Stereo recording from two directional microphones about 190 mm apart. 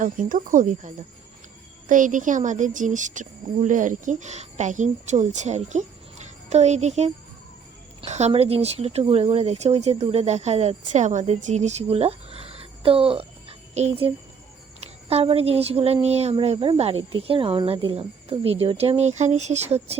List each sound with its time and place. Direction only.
0.0 s speech: 45° right (ahead or behind)